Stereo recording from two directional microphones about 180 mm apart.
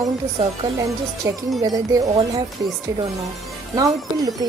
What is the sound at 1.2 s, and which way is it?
Speech, 15° right (ahead or behind).